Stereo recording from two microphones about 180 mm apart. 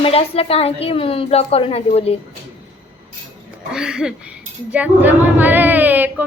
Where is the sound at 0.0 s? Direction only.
30° left (ahead or behind).